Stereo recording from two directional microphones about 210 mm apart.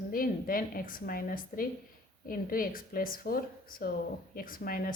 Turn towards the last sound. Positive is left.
turn(degrees=45)  # may be behind; listen again after turning